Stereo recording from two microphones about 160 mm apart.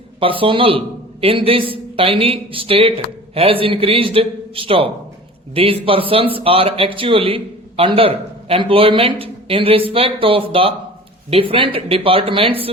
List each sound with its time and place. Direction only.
0.2 s speech: 35° right (ahead or behind)